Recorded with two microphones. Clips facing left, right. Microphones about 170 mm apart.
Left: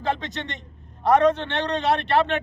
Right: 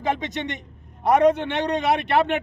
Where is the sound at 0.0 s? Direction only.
15° right (ahead or behind).